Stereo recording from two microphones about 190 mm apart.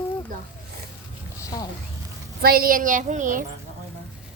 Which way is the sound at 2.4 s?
50° right (ahead or behind).